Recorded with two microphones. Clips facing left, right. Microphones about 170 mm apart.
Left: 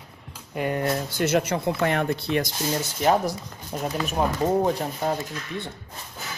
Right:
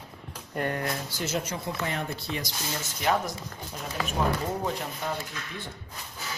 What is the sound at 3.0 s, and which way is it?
Speech, 40° left (ahead or behind).